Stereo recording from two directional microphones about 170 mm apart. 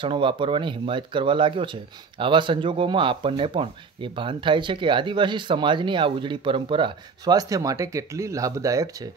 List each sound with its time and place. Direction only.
0.0 s speech: 30° right (ahead or behind)